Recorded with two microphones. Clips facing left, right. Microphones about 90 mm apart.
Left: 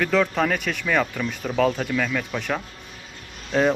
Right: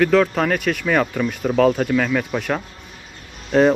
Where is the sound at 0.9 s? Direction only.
15° right (ahead or behind).